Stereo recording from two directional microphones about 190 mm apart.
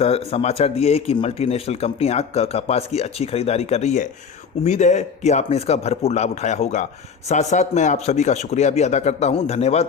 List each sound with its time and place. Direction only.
0.3 s speech: 30° left (ahead or behind)